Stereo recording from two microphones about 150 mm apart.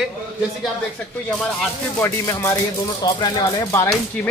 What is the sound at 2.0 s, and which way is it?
Speech, 20° left (ahead or behind).